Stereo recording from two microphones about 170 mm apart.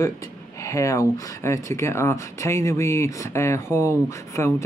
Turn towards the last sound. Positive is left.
turn(degrees=15)  # may be behind; listen again after turning